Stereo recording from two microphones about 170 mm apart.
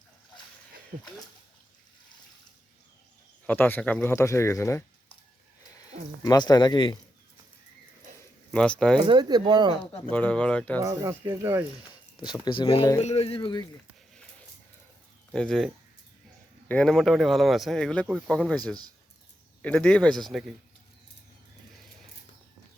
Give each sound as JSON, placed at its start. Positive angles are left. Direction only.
{"t": 3.4, "sound": "speech", "side_deg": 10}
{"t": 6.2, "sound": "speech", "side_deg": 25}
{"t": 8.5, "sound": "a man's voice", "side_deg": 5}
{"t": 9.0, "sound": "speech", "side_deg": -25}
{"t": 10.1, "sound": "speech", "side_deg": 10}
{"t": 10.8, "sound": "speech", "side_deg": -20}
{"t": 11.9, "sound": "speech", "side_deg": 25}
{"t": 15.3, "sound": "a man's voice", "side_deg": 5}